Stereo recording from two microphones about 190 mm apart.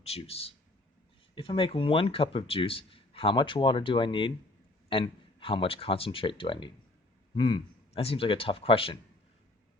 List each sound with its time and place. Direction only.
0.0 s a man's voice: 30° left (ahead or behind)